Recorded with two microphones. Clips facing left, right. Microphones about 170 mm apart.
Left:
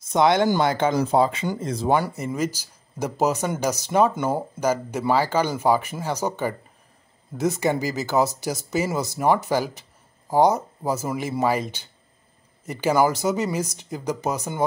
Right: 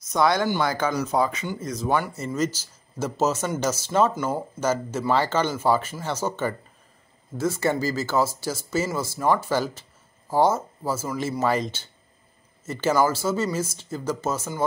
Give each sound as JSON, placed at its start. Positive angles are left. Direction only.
{"t": 0.0, "sound": "speech", "side_deg": 25}
{"t": 2.1, "sound": "speech", "side_deg": 10}